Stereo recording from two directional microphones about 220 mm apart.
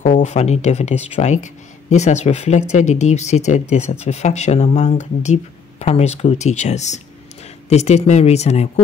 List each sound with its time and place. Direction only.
0.0 s speech: 30° left (ahead or behind)